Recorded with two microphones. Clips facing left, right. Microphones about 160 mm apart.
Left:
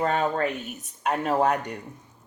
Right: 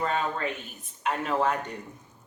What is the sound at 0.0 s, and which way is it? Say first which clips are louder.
A woman's voice: left 4 dB; 45° left (ahead or behind).